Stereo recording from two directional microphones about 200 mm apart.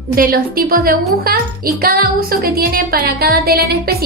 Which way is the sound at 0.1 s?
45° right (ahead or behind).